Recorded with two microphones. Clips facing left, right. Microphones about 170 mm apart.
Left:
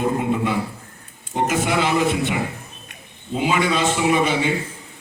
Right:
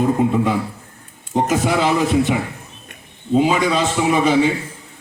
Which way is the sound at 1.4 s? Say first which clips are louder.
Right 3 dB; 35° right (ahead or behind).